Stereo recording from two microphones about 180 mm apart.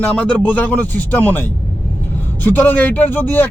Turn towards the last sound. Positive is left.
turn(degrees=10)  # may be behind; listen again after turning